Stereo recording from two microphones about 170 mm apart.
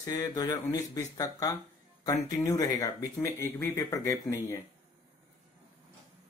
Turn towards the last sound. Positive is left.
turn(degrees=20)  # may be behind; listen again after turning